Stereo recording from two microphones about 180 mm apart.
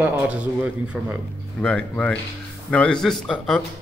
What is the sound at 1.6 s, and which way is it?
A man's voice, 5° left (ahead or behind).